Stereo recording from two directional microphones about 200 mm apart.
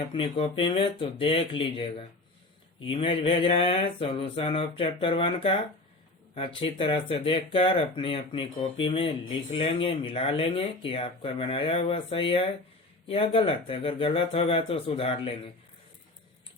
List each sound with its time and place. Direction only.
0.1 s speech: 25° left (ahead or behind)